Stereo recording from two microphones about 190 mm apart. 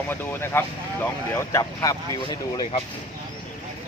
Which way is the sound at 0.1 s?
10° left (ahead or behind).